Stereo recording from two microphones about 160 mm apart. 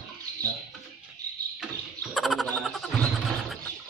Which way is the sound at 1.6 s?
Centre (ahead or behind).